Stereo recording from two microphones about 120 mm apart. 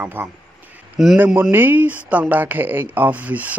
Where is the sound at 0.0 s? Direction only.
15° right (ahead or behind).